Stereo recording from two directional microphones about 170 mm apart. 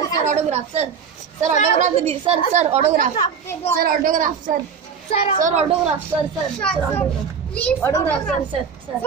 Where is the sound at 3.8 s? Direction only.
55° right (ahead or behind).